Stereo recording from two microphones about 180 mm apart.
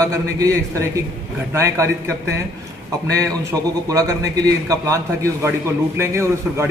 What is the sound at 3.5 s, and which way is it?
Speech, 20° right (ahead or behind).